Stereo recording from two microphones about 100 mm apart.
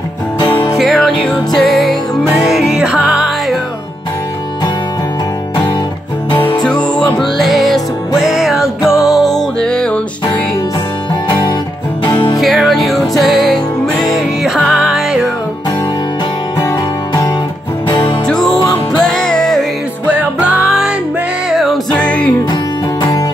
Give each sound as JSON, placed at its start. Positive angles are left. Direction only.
{"t": 0.7, "sound": "music", "side_deg": 0}
{"t": 6.6, "sound": "music", "side_deg": 5}
{"t": 12.0, "sound": "music", "side_deg": 15}
{"t": 12.4, "sound": "music", "side_deg": 0}
{"t": 17.8, "sound": "music", "side_deg": 55}
{"t": 18.2, "sound": "music", "side_deg": 5}
{"t": 20.1, "sound": "music", "side_deg": -15}
{"t": 20.6, "sound": "music", "side_deg": -5}
{"t": 21.9, "sound": "music", "side_deg": 10}